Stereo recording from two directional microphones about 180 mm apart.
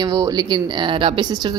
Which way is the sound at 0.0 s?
20° right (ahead or behind).